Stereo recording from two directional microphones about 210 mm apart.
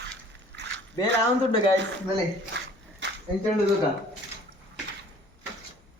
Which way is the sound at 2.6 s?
55° right (ahead or behind).